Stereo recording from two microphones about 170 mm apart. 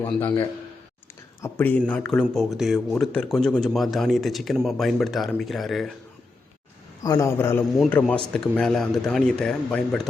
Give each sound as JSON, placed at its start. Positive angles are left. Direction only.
{"t": 0.0, "sound": "a man's voice", "side_deg": 10}
{"t": 1.4, "sound": "speech", "side_deg": 15}
{"t": 7.0, "sound": "a man's voice", "side_deg": 20}